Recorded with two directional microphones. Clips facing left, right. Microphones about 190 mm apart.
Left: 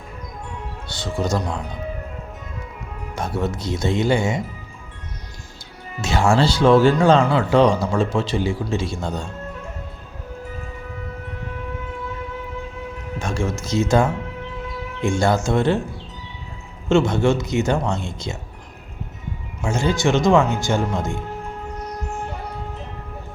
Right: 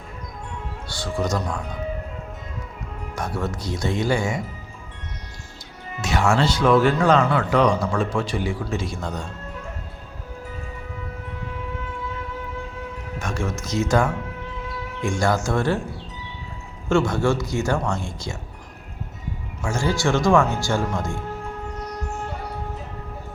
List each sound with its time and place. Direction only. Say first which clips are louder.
0.9 s speech: left 1 dB; 20° left (ahead or behind)
3.2 s speech: left 3 dB; 25° left (ahead or behind)
6.0 s speech: left 3 dB; 30° left (ahead or behind)
13.1 s speech: left 3 dB; 30° left (ahead or behind)
16.9 s speech: left 3 dB; 20° left (ahead or behind)
19.6 s speech: left 3 dB; 20° left (ahead or behind)